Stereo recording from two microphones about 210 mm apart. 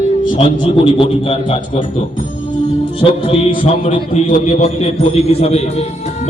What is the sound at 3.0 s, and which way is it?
A man's voice, 30° left (ahead or behind).